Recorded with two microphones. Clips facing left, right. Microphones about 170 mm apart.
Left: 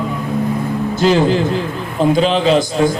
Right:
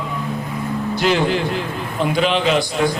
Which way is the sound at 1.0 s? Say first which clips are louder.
Left 5 dB; 35° left (ahead or behind).